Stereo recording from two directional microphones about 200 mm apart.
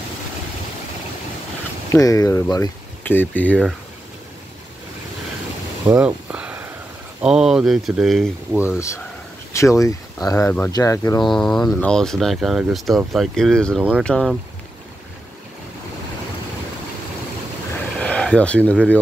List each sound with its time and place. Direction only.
1.9 s speech: 15° left (ahead or behind)
5.9 s speech: 10° right (ahead or behind)
8.7 s speech: 15° left (ahead or behind)
11.2 s speech: centre (ahead or behind)
17.9 s a sound: 5° left (ahead or behind)
18.7 s speech: 5° left (ahead or behind)